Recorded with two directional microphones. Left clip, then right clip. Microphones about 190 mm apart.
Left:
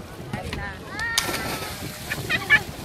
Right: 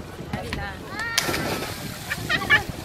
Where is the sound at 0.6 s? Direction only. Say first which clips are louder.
Even; 55° right (ahead or behind).